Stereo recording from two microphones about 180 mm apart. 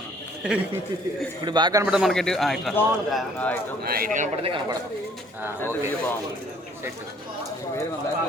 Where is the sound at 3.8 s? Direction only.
55° right (ahead or behind).